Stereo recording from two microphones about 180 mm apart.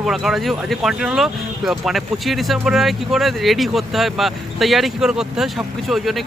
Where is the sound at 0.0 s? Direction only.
Centre (ahead or behind).